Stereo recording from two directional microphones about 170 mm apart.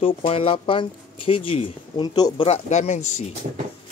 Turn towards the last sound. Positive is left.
turn(degrees=40)  # may be behind; listen again after turning